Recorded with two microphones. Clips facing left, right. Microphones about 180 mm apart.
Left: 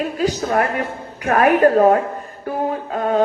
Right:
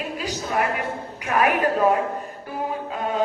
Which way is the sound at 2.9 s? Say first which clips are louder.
Left 9 dB; 50° left (ahead or behind).